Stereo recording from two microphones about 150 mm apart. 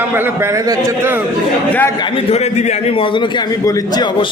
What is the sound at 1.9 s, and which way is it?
A man's voice, 35° left (ahead or behind).